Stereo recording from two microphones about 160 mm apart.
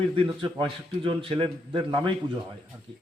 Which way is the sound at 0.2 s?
30° right (ahead or behind).